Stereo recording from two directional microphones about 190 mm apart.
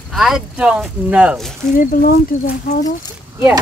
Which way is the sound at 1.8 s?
50° left (ahead or behind).